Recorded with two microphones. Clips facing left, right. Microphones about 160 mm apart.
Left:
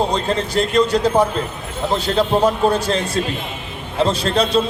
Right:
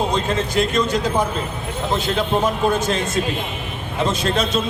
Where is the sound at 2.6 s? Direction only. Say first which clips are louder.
Left 2 dB; 35° left (ahead or behind).